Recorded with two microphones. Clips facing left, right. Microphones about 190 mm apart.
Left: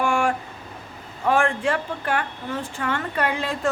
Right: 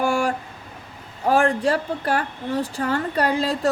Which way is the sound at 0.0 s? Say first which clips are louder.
Right 1 dB; 35° right (ahead or behind).